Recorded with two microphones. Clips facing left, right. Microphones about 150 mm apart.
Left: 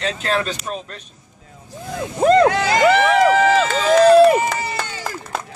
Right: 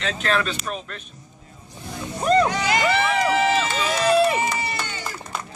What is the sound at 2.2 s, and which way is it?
Speech, 90° left.